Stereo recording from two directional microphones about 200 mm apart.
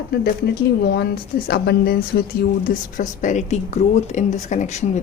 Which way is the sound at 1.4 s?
50° left (ahead or behind).